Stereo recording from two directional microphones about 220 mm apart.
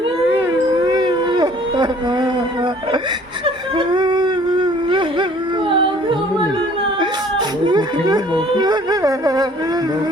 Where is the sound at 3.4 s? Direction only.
25° right (ahead or behind).